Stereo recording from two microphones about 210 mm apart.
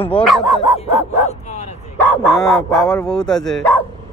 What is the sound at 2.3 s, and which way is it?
Speech, centre (ahead or behind).